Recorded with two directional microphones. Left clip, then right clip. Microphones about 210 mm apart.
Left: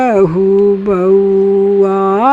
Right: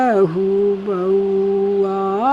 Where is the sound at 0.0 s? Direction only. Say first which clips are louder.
Left 5 dB; 10° left (ahead or behind).